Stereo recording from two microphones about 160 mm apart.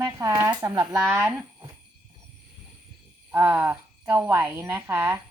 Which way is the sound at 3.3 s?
15° right (ahead or behind).